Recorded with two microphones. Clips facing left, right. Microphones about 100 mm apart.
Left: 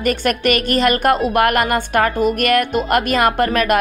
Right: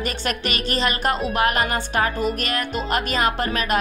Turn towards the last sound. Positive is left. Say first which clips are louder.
# left 7 dB
turn(degrees=55)  # may be behind; listen again after turning